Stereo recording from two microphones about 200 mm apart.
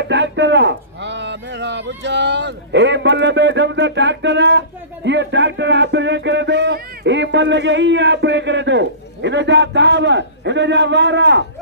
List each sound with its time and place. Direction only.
0.0 s speech: 60° right (ahead or behind)